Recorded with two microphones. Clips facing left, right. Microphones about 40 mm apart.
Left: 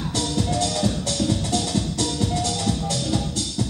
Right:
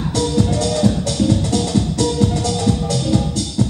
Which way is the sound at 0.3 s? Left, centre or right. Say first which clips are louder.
Right 4 dB; centre.